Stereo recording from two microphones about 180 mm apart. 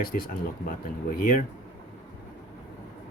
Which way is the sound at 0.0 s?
55° left (ahead or behind).